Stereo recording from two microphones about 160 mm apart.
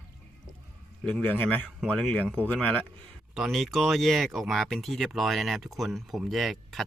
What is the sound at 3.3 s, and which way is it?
Speech, centre (ahead or behind).